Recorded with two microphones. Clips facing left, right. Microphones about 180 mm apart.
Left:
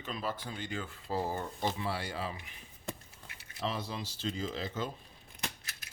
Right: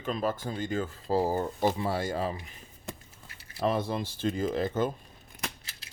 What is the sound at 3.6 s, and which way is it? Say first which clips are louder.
Speech: right 8 dB; 55° right (ahead or behind).